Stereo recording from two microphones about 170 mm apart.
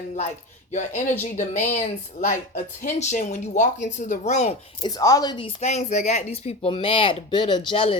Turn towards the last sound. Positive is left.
turn(degrees=30)  # may be behind; listen again after turning